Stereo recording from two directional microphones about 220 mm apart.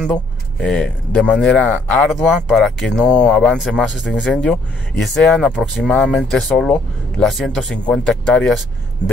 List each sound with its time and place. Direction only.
0.1 s speech: 5° left (ahead or behind)